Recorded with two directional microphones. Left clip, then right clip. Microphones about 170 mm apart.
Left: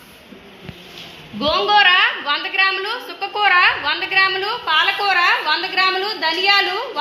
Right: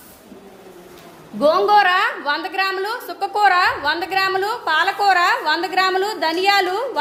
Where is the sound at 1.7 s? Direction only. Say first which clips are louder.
Left 1 dB; 90° right; by 6.8 s 50° right (ahead or behind).